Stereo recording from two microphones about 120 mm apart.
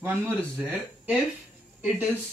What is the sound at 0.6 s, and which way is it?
Speech, 15° right (ahead or behind).